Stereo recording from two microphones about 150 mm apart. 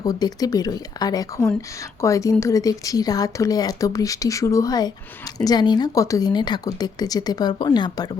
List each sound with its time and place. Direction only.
0.0 s a woman's voice: 25° left (ahead or behind)